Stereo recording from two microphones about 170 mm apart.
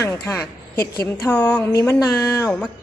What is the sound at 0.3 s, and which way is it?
A woman's voice, 15° left (ahead or behind).